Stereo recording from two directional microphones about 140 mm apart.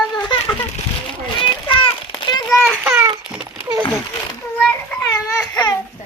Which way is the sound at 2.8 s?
15° right (ahead or behind).